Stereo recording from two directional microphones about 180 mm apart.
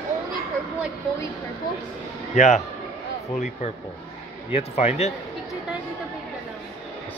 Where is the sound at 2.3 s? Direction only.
40° left (ahead or behind).